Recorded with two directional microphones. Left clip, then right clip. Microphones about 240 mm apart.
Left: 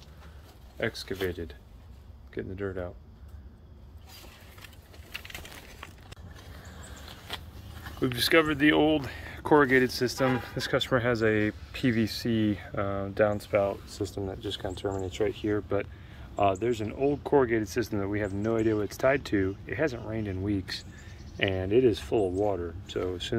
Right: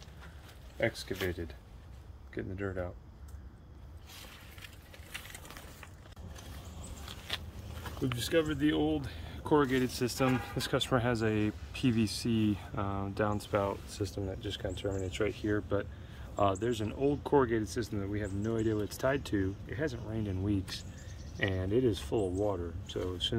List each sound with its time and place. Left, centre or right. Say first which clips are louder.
0.7 s speech: left 1 dB; centre
2.3 s speech: left 3 dB; centre
7.3 s a sound: even; left
8.2 s speech: left 8 dB; centre